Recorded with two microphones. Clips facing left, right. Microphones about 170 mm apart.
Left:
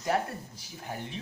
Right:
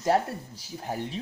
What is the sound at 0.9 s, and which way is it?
Speech, 40° right (ahead or behind).